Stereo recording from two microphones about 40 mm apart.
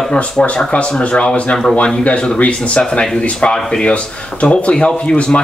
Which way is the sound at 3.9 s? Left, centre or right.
Left.